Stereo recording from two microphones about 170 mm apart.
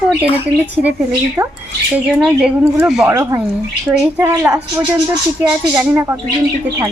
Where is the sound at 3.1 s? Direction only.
15° right (ahead or behind).